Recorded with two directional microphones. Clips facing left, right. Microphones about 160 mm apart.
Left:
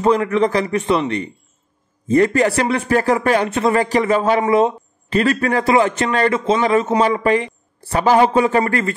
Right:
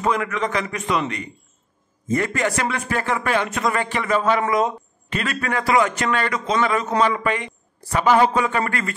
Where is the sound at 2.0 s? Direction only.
35° left (ahead or behind).